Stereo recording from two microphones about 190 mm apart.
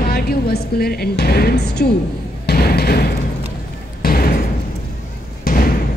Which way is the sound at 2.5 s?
55° left (ahead or behind).